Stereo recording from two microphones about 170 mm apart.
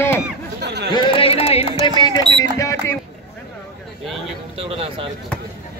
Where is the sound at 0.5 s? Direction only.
80° right.